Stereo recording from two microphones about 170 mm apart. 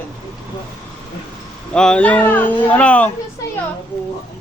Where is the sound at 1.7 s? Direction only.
5° left (ahead or behind).